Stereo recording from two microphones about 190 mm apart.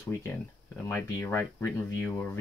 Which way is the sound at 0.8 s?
10° left (ahead or behind).